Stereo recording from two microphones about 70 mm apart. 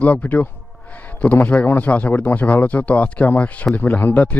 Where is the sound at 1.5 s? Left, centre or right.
Left.